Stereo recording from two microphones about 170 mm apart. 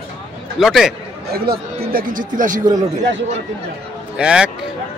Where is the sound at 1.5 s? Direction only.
65° right (ahead or behind).